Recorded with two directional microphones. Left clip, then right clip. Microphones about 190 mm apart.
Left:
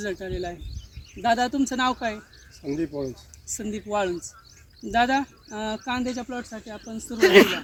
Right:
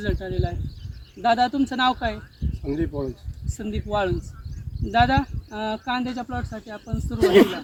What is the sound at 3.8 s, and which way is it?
Speech, centre (ahead or behind).